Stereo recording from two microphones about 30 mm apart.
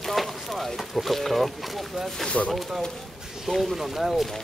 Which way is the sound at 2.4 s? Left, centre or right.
Left.